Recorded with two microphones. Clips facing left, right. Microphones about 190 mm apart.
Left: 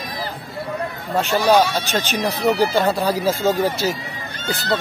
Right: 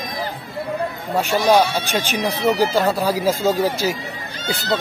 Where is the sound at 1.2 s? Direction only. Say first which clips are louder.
Even; 10° right (ahead or behind).